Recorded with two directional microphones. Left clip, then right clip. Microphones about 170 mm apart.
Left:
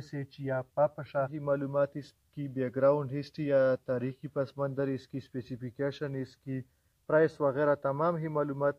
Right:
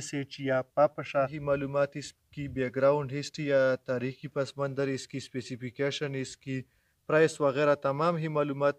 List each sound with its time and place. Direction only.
0.1 s speech: 50° right (ahead or behind)
1.3 s a man's voice: centre (ahead or behind); by 8.7 s 30° right (ahead or behind)